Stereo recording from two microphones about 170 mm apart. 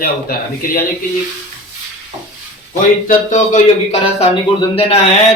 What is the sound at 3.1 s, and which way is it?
Speech, 45° left (ahead or behind).